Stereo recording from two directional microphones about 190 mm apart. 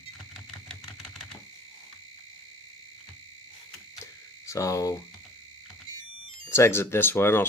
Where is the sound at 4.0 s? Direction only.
15° left (ahead or behind).